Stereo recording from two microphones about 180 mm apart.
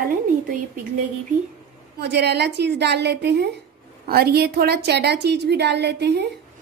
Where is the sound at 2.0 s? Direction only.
70° right (ahead or behind).